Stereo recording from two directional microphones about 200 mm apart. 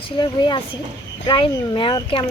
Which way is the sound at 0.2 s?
20° left (ahead or behind).